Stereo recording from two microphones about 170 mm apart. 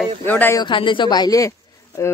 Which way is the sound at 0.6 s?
30° left (ahead or behind).